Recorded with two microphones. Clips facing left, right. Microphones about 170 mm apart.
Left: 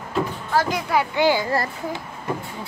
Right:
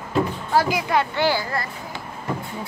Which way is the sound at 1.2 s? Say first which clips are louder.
Left 3 dB; 15° left (ahead or behind).